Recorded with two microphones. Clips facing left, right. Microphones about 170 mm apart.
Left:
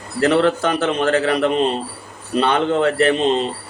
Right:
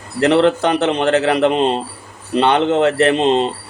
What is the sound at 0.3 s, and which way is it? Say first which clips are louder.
A man's voice: right 3 dB; 25° right (ahead or behind).